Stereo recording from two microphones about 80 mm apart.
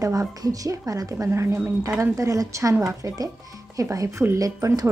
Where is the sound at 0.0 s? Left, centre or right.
Right.